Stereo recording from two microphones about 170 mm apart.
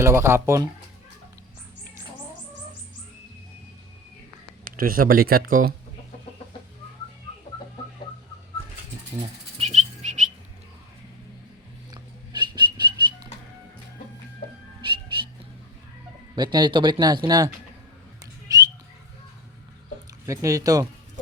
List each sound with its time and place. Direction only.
0.0 s speech: 15° right (ahead or behind)
4.6 s speech: 55° right (ahead or behind)
9.6 s bird flight: 40° right (ahead or behind)
12.3 s a sound: 25° right (ahead or behind)
14.8 s music: 30° right (ahead or behind)
16.3 s speech: 25° right (ahead or behind)
18.4 s a sound: 20° right (ahead or behind)
20.2 s speech: 20° right (ahead or behind)